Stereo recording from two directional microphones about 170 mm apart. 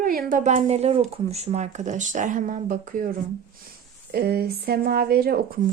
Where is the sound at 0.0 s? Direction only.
55° right (ahead or behind).